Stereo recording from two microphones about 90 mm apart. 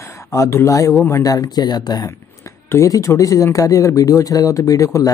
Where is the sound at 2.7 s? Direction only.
35° left (ahead or behind).